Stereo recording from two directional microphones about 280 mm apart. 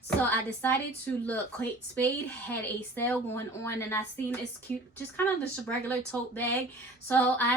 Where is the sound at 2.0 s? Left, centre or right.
Centre.